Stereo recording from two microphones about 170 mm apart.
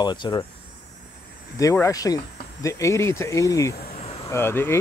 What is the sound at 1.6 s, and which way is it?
Speech, 20° left (ahead or behind).